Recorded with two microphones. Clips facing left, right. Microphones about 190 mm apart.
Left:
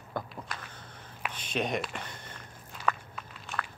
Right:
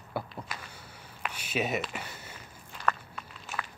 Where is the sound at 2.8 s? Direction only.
5° left (ahead or behind).